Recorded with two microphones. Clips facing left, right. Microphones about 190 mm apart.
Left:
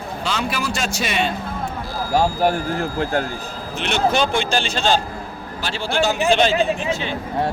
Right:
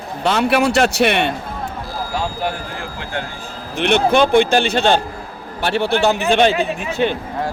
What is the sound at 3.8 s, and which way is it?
Speech, 60° right (ahead or behind).